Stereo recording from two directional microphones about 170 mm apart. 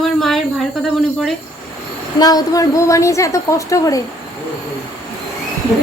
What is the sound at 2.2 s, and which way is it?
A woman's voice, 20° left (ahead or behind).